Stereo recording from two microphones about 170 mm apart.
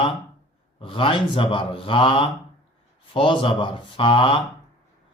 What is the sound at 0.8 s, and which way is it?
Speech, 30° left (ahead or behind).